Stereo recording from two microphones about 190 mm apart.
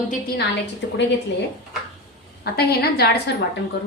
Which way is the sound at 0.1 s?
55° left (ahead or behind).